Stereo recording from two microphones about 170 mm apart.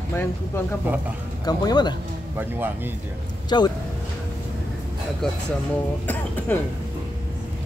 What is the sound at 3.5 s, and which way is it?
Speech, 25° left (ahead or behind).